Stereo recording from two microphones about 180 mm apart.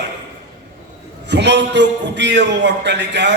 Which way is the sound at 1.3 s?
75° right (ahead or behind).